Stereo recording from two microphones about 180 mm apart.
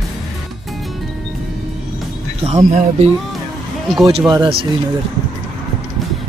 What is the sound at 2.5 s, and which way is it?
Speech, 40° right (ahead or behind).